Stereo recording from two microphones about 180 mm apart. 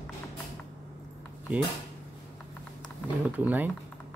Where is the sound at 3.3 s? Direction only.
10° right (ahead or behind).